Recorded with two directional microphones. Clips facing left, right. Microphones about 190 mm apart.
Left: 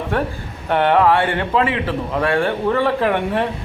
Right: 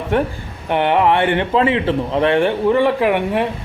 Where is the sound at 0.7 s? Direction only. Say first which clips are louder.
Even; 15° right (ahead or behind).